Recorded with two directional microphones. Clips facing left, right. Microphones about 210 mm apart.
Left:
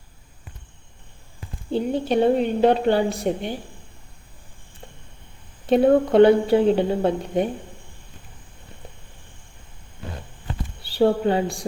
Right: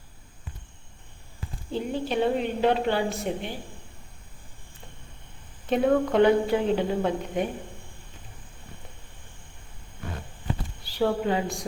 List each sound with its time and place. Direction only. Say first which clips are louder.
1.7 s a woman's voice: left 6 dB; 35° left (ahead or behind)
5.6 s a woman's voice: left 6 dB; 35° left (ahead or behind)
10.8 s a woman's voice: left 6 dB; 30° left (ahead or behind)